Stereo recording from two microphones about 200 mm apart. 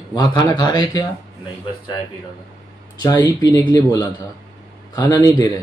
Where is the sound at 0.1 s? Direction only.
20° left (ahead or behind).